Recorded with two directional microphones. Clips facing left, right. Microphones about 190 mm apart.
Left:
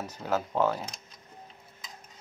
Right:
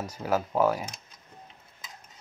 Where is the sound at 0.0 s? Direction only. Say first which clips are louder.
Right 2 dB; 10° right (ahead or behind).